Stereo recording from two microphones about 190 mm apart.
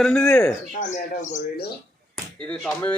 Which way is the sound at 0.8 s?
40° left (ahead or behind).